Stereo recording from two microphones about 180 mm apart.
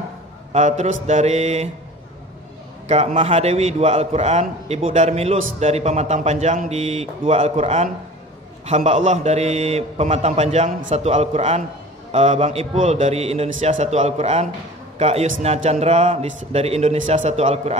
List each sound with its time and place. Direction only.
0.5 s a man's voice: 40° right (ahead or behind)
2.9 s a man's voice: 35° right (ahead or behind)